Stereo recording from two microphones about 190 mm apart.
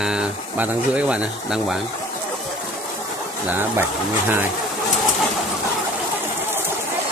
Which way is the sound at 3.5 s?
10° right (ahead or behind).